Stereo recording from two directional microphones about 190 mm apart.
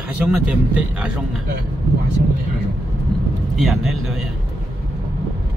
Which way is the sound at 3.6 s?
Centre (ahead or behind).